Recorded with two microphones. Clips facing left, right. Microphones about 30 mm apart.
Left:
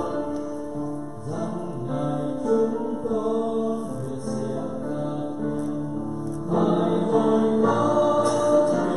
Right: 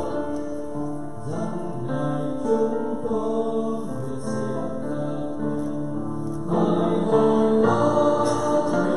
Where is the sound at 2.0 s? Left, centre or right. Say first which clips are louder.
Even; centre.